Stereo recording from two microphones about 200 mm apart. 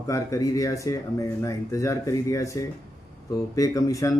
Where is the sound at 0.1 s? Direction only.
15° left (ahead or behind).